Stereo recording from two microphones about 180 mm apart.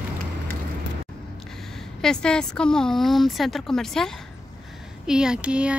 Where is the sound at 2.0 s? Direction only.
5° left (ahead or behind).